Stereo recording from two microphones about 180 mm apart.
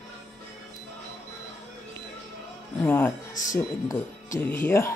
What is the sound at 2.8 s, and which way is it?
Speech, 15° left (ahead or behind).